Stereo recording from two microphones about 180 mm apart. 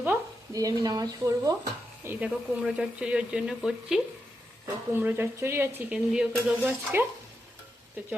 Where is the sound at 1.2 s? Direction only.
20° right (ahead or behind).